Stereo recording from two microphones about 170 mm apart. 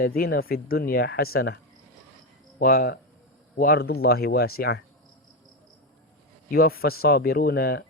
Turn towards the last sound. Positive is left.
turn(degrees=65)  # may be behind; listen again after turning